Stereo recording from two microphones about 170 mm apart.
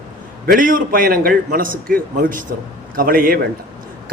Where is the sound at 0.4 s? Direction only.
55° right (ahead or behind).